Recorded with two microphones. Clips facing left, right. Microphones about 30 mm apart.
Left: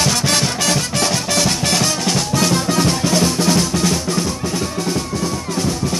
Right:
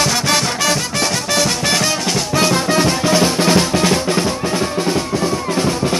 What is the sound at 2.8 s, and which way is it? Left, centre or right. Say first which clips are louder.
Music: right 2 dB; centre.